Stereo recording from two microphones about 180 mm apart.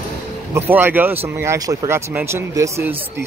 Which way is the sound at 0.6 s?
10° right (ahead or behind).